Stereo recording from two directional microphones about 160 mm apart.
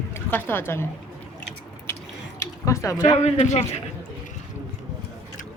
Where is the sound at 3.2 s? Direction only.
45° left (ahead or behind).